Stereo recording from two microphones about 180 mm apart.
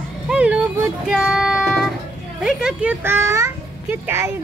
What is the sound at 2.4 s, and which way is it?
A child's voice, 5° right (ahead or behind).